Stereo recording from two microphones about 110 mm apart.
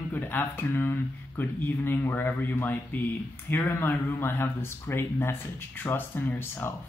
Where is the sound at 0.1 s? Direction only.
20° left (ahead or behind).